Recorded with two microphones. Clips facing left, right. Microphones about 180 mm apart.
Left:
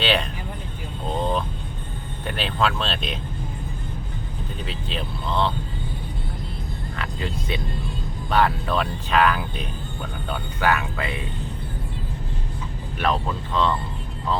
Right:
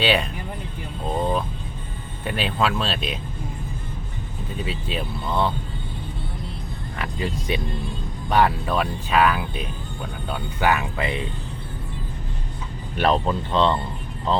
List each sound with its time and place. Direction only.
0.0 s vehicle: 10° right (ahead or behind)
2.2 s speech: 5° right (ahead or behind)
4.6 s speech: 5° right (ahead or behind)
7.0 s speech: 15° right (ahead or behind)
13.0 s speech: 30° right (ahead or behind)